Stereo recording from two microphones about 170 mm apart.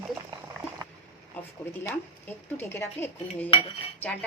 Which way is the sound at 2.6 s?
15° left (ahead or behind).